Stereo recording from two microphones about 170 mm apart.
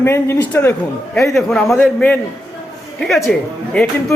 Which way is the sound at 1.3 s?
Centre (ahead or behind).